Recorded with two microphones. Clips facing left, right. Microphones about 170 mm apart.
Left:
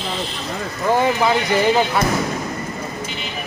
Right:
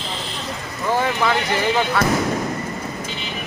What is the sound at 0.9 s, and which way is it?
Speech, 15° left (ahead or behind).